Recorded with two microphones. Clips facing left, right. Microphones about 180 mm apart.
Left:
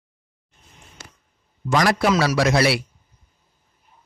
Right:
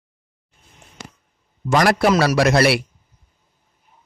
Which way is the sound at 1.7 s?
60° right (ahead or behind).